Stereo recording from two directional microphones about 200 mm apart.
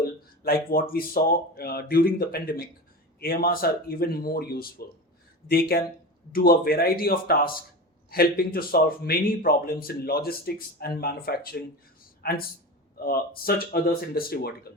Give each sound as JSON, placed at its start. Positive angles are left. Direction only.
{"t": 0.0, "sound": "a man's voice", "side_deg": 50}